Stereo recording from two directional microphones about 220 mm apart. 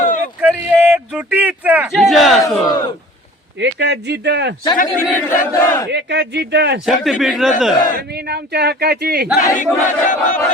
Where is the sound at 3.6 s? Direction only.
50° right (ahead or behind).